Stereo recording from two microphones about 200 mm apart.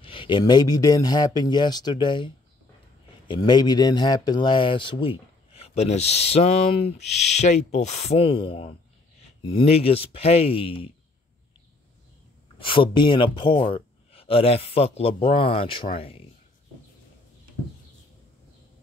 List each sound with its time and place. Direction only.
0.0 s speech: 25° left (ahead or behind)
12.5 s speech: 25° left (ahead or behind)